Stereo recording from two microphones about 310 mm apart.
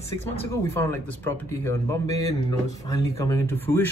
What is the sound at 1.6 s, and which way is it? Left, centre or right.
A man's voice, centre.